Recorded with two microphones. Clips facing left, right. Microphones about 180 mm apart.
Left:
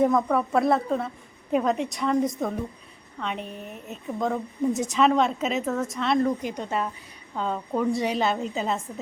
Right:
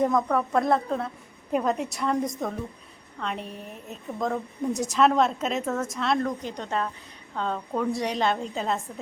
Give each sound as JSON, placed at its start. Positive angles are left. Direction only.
{"t": 0.0, "sound": "a woman's voice", "side_deg": 5}